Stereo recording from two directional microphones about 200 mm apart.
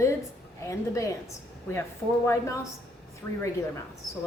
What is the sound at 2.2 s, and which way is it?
Speech, 15° left (ahead or behind).